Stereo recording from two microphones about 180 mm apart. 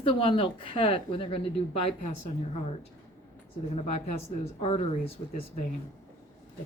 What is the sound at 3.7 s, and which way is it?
Speech, 35° left (ahead or behind).